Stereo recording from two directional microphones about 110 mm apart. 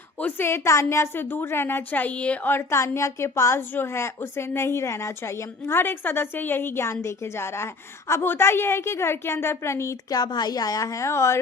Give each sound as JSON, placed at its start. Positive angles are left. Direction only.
{"t": 0.2, "sound": "a woman's voice", "side_deg": 15}